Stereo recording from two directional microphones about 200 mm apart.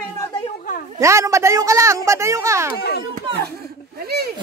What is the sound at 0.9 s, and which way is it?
A woman's voice, 15° right (ahead or behind).